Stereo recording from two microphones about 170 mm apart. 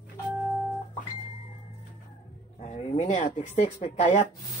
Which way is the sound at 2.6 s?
40° left (ahead or behind).